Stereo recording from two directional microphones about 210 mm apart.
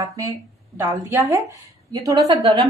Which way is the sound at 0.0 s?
15° right (ahead or behind).